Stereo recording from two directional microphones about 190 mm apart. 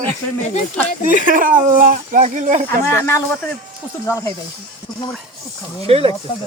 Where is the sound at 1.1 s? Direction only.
45° right (ahead or behind).